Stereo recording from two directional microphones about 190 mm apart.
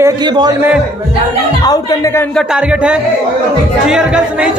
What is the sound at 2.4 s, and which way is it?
A woman's voice, 5° right (ahead or behind).